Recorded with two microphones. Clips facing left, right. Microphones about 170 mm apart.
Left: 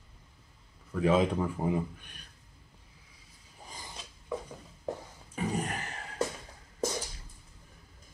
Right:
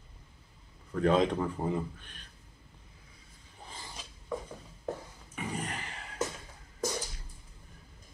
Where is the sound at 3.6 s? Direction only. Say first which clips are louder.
Even; 15° left (ahead or behind).